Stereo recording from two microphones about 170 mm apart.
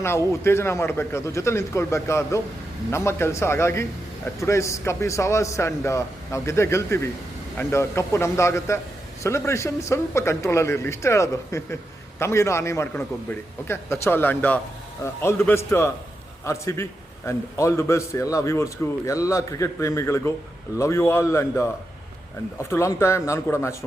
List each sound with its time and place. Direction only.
0.0 s a man's voice: 15° left (ahead or behind)
22.7 s a man's voice: 15° left (ahead or behind)